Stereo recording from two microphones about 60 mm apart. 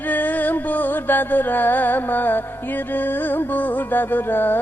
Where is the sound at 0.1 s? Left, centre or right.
Left.